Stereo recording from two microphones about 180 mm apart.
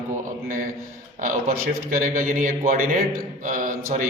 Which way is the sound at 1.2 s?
50° right (ahead or behind).